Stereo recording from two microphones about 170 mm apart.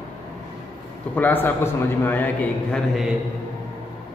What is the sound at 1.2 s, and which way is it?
A man's voice, 10° left (ahead or behind).